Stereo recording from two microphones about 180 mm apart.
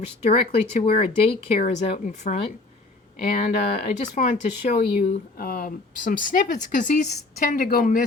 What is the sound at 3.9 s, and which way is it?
Speech, 40° left (ahead or behind).